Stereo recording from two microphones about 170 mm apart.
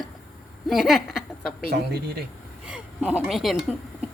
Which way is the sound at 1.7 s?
70° right (ahead or behind).